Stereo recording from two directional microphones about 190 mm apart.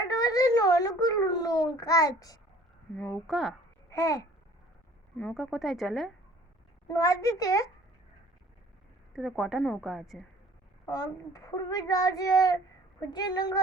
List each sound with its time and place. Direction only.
0.0 s a child's voice: 20° left (ahead or behind)
2.9 s a woman's voice: 5° left (ahead or behind)
3.8 s babbling: 15° left (ahead or behind)
5.1 s a woman's voice: 5° left (ahead or behind)
6.8 s a child's voice: 15° left (ahead or behind)
9.1 s a woman's voice: centre (ahead or behind)
10.8 s speech: 20° left (ahead or behind)